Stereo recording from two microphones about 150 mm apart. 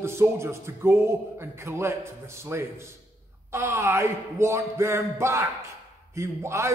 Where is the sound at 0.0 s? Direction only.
15° right (ahead or behind).